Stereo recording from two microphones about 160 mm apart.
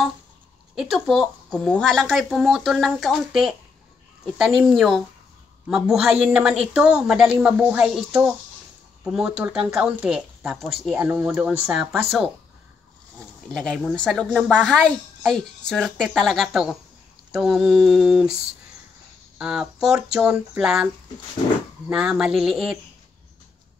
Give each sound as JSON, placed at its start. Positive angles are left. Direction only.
{"t": 0.7, "sound": "speech", "side_deg": 0}
{"t": 13.5, "sound": "speech", "side_deg": 0}